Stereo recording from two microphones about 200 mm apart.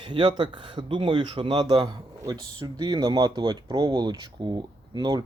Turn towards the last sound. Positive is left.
turn(degrees=-20)  # may be behind; listen again after turning